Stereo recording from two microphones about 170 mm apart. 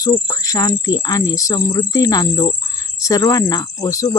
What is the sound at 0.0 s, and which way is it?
Speech, 20° left (ahead or behind).